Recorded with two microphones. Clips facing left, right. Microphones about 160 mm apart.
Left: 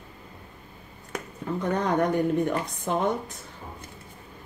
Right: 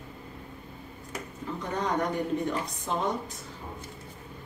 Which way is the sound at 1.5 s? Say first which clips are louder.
Left 7 dB; 55° left (ahead or behind).